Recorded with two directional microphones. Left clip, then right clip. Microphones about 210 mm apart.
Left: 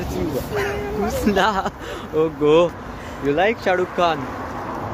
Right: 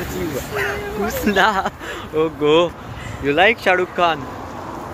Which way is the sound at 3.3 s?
15° right (ahead or behind).